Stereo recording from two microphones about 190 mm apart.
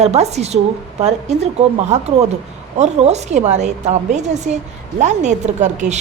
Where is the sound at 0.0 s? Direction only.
35° right (ahead or behind).